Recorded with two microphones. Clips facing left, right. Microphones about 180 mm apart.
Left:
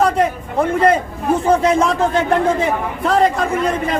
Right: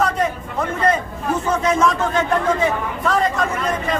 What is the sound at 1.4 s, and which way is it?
A man's voice, 30° left (ahead or behind).